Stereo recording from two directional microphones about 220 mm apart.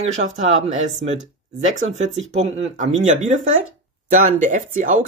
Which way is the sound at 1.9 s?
30° right (ahead or behind).